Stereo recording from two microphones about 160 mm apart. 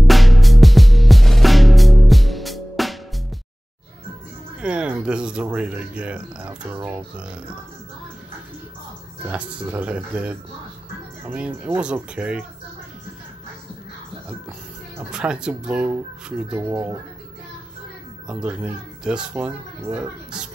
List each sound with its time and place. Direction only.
0.0 s music: centre (ahead or behind)
4.6 s speech: 5° right (ahead or behind)
9.3 s speech: 10° right (ahead or behind)
15.0 s a child's voice: 5° right (ahead or behind)
18.2 s a child's voice: 5° right (ahead or behind)